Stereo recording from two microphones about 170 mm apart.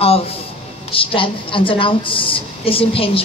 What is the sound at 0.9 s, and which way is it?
A woman's voice, 30° left (ahead or behind).